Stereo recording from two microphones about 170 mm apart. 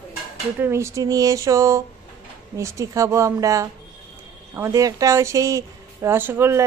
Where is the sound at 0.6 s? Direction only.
15° right (ahead or behind).